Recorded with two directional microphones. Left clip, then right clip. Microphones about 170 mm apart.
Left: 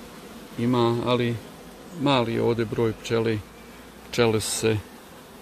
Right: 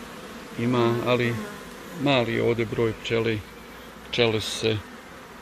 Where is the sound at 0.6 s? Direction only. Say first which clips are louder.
Even; 20° left (ahead or behind); by 4.8 s 40° left (ahead or behind).